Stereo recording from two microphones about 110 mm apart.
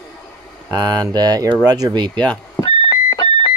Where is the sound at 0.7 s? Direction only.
35° right (ahead or behind).